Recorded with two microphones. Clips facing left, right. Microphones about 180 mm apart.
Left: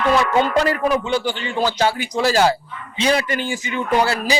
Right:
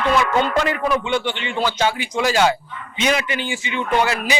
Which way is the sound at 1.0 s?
40° left (ahead or behind).